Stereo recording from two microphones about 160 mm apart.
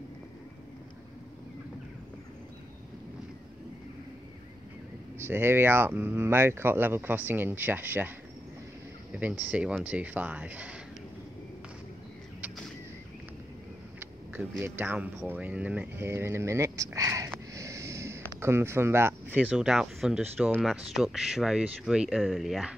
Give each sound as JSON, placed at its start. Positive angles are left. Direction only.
{"t": 5.2, "sound": "speech", "side_deg": -15}
{"t": 9.1, "sound": "speech", "side_deg": -10}
{"t": 14.6, "sound": "speech", "side_deg": -10}
{"t": 17.6, "sound": "snort", "side_deg": -20}
{"t": 18.4, "sound": "speech", "side_deg": -15}